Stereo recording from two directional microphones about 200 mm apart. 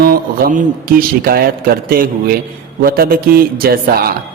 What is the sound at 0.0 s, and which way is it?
A man's voice, 45° right (ahead or behind).